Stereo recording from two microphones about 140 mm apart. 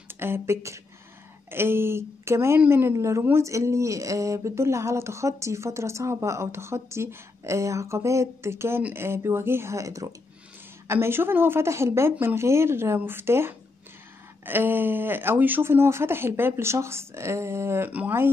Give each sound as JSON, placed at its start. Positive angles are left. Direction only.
{"t": 0.1, "sound": "speech", "side_deg": -15}